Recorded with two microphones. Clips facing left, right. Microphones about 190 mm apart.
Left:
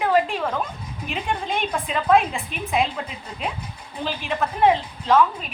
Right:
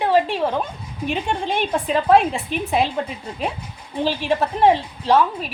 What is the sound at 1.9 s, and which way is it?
Speech, 35° right (ahead or behind).